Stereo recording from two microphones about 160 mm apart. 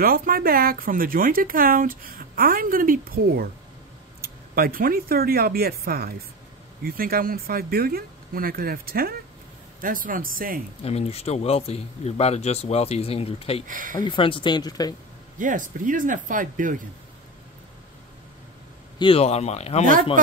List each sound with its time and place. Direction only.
0.0 s speech: 65° right (ahead or behind)
9.8 s speech: 60° right (ahead or behind)
10.8 s speech: 40° left (ahead or behind)
13.7 s speech: 55° right (ahead or behind)
13.9 s speech: 30° left (ahead or behind)
15.3 s speech: 55° right (ahead or behind)
18.9 s speech: 35° left (ahead or behind)